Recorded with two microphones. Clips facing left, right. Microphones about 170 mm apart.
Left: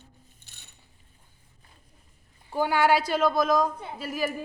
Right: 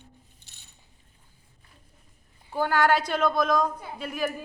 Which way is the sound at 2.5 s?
10° left (ahead or behind).